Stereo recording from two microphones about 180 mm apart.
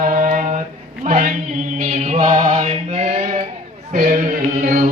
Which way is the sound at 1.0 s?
45° right (ahead or behind).